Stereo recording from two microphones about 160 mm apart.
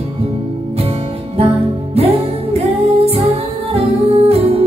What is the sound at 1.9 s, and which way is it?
Music, 40° right (ahead or behind).